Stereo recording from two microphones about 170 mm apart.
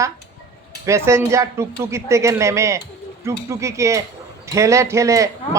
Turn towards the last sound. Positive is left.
turn(degrees=-20)  # may be behind; listen again after turning